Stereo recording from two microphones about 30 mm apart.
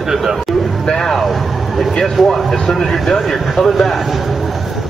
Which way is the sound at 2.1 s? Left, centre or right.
Centre.